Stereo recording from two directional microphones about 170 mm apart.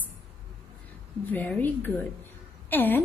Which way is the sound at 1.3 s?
10° left (ahead or behind).